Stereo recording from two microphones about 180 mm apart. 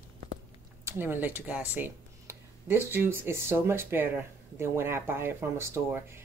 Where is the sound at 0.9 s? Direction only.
10° right (ahead or behind).